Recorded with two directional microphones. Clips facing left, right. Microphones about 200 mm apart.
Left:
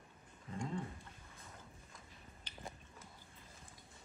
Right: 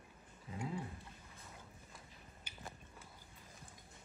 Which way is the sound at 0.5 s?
5° right (ahead or behind).